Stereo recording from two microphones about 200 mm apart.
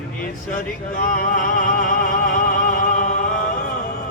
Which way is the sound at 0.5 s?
40° left (ahead or behind).